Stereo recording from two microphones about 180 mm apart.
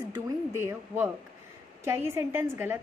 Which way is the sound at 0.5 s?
10° right (ahead or behind).